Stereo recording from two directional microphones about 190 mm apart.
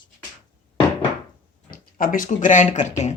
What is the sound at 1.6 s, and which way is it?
Speech, 50° left (ahead or behind).